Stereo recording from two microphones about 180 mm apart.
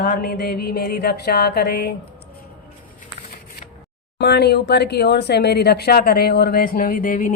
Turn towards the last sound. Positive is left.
turn(degrees=50)  # may be behind; listen again after turning